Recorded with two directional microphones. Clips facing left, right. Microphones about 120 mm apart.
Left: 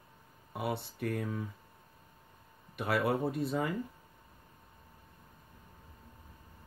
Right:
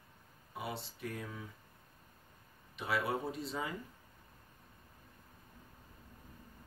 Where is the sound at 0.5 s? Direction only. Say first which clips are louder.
Left 6 dB; 60° left (ahead or behind).